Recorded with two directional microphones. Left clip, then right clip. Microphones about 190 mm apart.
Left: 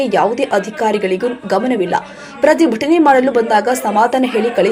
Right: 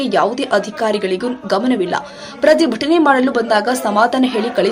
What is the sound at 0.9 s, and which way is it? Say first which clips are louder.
Speech: left 2 dB; 45° right (ahead or behind).